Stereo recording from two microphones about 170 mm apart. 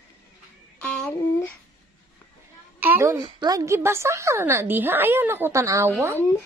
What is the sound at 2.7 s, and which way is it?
Speech, 10° right (ahead or behind).